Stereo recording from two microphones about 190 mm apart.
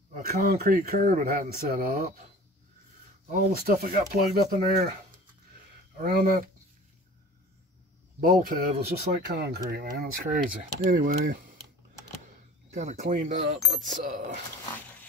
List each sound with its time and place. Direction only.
0.1 s speech: 50° right (ahead or behind)
3.3 s speech: 50° right (ahead or behind)
5.9 s speech: 50° right (ahead or behind)
8.2 s speech: 50° right (ahead or behind)
12.7 s speech: 40° right (ahead or behind)